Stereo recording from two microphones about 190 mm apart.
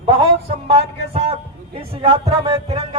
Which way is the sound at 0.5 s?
30° right (ahead or behind).